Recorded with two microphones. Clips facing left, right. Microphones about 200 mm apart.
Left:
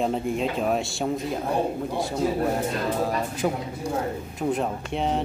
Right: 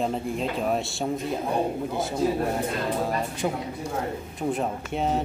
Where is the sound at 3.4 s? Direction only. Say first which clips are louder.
Left 2 dB; 5° right (ahead or behind).